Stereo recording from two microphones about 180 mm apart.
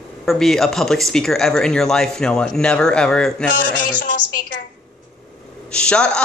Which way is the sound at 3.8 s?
50° left (ahead or behind).